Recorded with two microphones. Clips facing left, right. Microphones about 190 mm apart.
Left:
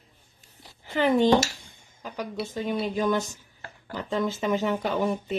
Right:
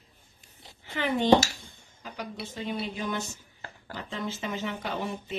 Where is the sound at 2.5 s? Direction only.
45° left (ahead or behind).